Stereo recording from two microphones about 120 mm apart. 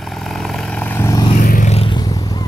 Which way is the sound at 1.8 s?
35° left (ahead or behind).